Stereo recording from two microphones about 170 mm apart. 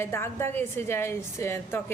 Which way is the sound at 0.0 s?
15° left (ahead or behind).